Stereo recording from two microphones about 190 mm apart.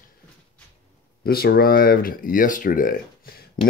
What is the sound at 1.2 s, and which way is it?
Speech, 55° left (ahead or behind).